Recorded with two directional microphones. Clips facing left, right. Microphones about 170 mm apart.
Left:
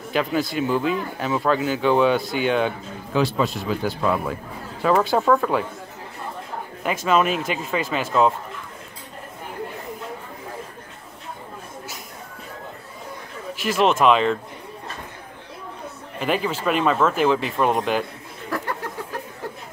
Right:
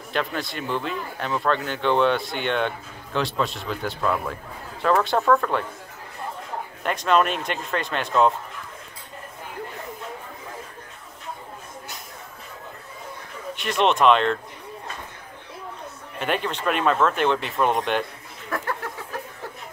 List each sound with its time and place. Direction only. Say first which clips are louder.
0.1 s speech: left 5 dB; 5° left (ahead or behind)
6.8 s speech: left 1 dB; 5° left (ahead or behind)
13.6 s speech: left 2 dB; centre (ahead or behind)
16.2 s speech: left 3 dB; centre (ahead or behind)